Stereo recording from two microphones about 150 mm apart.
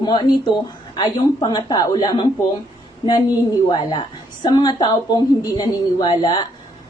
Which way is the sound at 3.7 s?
30° left (ahead or behind).